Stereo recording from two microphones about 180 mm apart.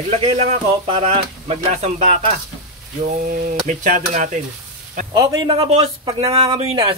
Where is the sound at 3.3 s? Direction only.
45° right (ahead or behind).